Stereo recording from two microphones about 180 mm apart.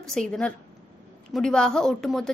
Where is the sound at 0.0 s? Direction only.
5° left (ahead or behind).